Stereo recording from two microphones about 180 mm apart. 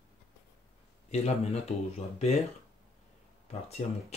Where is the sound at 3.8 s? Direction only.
40° left (ahead or behind).